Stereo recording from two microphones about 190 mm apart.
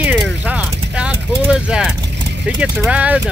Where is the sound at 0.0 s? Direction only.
5° right (ahead or behind).